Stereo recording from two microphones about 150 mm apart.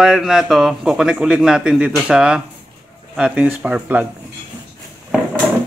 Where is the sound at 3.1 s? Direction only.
10° right (ahead or behind).